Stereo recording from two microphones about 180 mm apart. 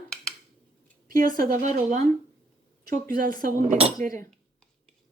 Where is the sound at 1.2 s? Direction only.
50° right (ahead or behind).